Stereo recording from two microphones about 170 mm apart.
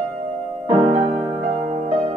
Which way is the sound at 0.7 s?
35° right (ahead or behind).